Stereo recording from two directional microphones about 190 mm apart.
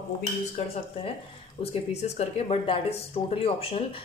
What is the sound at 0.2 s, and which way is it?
Speech, 30° left (ahead or behind).